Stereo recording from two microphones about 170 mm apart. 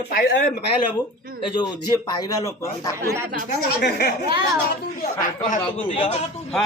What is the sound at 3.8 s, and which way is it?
Speech, 75° left (ahead or behind).